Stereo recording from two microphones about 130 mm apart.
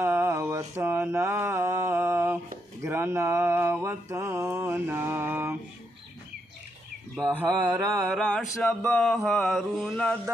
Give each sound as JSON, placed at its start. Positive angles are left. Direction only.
{"t": 0.0, "sound": "mantra", "side_deg": -20}
{"t": 7.2, "sound": "mantra", "side_deg": -15}
{"t": 8.1, "sound": "a sound", "side_deg": 5}
{"t": 8.8, "sound": "mantra", "side_deg": 5}